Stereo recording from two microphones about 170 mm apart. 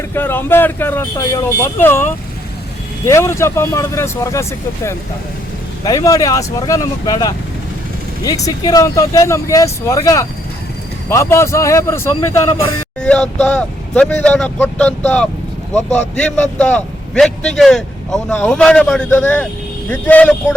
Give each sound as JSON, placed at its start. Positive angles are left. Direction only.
{"t": 0.1, "sound": "speech", "side_deg": 15}
{"t": 3.1, "sound": "speech", "side_deg": 15}
{"t": 5.8, "sound": "speech", "side_deg": 20}
{"t": 13.0, "sound": "a man's voice", "side_deg": 5}